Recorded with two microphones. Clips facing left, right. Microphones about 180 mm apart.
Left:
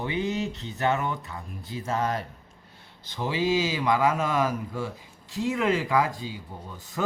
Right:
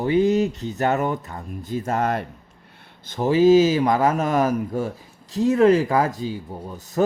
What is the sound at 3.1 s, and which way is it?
Speech, 45° right (ahead or behind).